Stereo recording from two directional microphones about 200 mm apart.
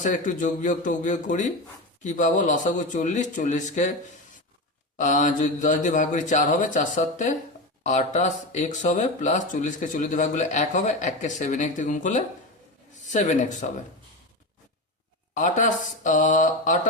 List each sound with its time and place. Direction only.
0.0 s speech: 40° left (ahead or behind)
4.9 s speech: 40° left (ahead or behind)
15.4 s speech: 40° left (ahead or behind)